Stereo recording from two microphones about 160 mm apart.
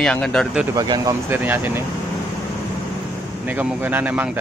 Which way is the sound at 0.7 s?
25° right (ahead or behind).